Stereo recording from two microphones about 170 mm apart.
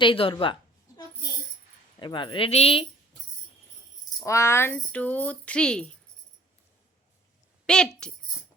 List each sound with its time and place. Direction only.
0.0 s speech: 30° left (ahead or behind)
2.0 s speech: 25° left (ahead or behind)
4.2 s speech: 15° left (ahead or behind)
7.7 s speech: 5° left (ahead or behind)